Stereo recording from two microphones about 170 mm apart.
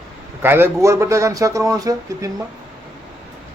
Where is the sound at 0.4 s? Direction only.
15° right (ahead or behind).